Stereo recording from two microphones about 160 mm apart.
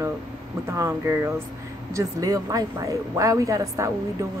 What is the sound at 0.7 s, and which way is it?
A woman's voice, 15° right (ahead or behind).